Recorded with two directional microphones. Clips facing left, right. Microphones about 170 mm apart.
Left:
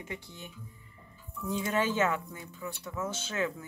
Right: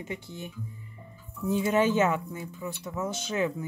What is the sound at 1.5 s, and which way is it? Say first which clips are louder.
Speech: right 6 dB; 20° right (ahead or behind).